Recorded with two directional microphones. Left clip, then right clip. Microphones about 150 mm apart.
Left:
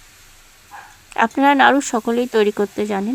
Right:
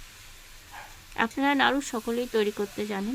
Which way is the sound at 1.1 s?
40° left (ahead or behind).